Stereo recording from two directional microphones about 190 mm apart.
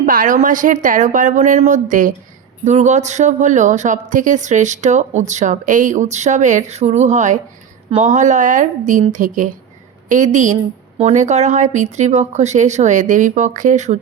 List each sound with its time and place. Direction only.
0.0 s a woman's voice: 45° right (ahead or behind)